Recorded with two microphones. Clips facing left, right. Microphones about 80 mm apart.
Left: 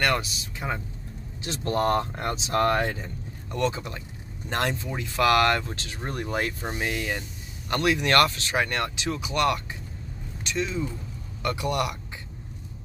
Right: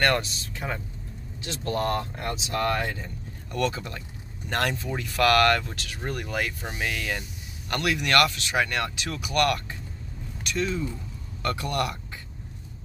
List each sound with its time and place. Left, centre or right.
0.0 s speech: centre
0.6 s speech: centre
1.4 s speech: left